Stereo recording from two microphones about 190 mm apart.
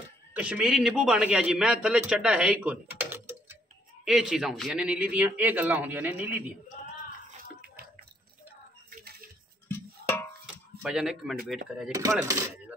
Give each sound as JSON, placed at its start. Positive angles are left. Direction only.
{"t": 0.3, "sound": "a man's voice", "side_deg": -5}
{"t": 10.8, "sound": "speech", "side_deg": -5}
{"t": 11.9, "sound": "speech", "side_deg": -15}